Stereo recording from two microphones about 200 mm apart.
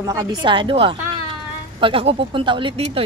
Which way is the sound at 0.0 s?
20° right (ahead or behind).